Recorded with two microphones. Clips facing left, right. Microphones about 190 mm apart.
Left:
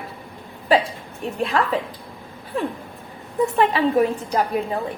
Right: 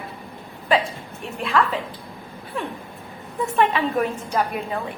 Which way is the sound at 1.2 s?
40° left (ahead or behind).